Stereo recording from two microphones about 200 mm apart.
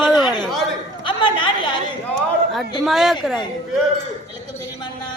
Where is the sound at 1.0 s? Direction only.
25° left (ahead or behind).